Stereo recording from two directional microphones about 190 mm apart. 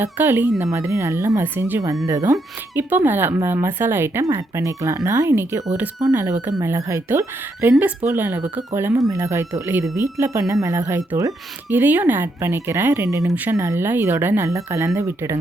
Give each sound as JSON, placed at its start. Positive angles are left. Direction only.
{"t": 0.0, "sound": "speech", "side_deg": -10}